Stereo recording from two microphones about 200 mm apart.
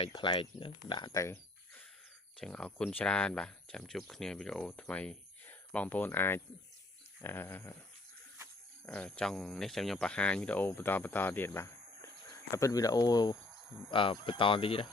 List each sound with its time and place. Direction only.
0.0 s speech: 25° left (ahead or behind)
8.9 s speech: 5° left (ahead or behind); by 14.8 s 25° left (ahead or behind)